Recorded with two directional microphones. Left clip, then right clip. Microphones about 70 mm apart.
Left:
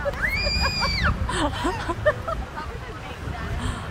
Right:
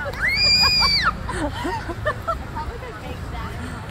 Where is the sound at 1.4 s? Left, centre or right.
Left.